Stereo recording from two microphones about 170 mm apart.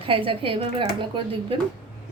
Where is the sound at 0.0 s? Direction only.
30° right (ahead or behind).